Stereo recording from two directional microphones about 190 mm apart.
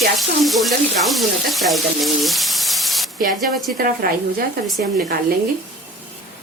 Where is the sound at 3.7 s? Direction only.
50° right (ahead or behind).